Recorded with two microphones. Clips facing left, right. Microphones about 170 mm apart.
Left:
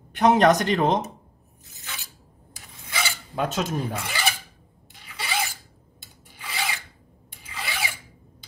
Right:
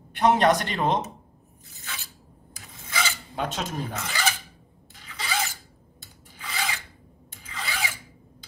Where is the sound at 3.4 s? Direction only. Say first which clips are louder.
Left 4 dB; 45° left (ahead or behind).